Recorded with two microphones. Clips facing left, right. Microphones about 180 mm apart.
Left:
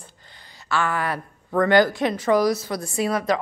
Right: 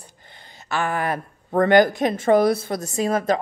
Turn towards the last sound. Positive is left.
turn(degrees=-45)  # may be behind; listen again after turning